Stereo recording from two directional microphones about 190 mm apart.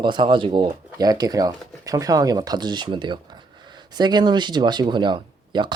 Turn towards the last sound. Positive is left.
turn(degrees=-25)  # may be behind; listen again after turning